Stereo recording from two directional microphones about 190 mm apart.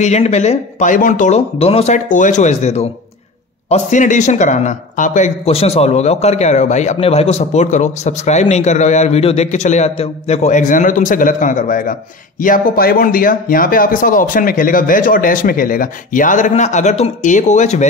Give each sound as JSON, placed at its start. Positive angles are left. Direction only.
{"t": 0.0, "sound": "speech", "side_deg": 35}